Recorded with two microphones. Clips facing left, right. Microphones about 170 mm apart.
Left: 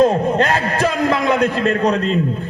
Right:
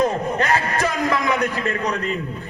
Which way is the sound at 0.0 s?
30° left (ahead or behind).